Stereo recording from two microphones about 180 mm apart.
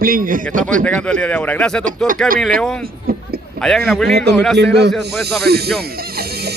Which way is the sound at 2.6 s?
5° left (ahead or behind).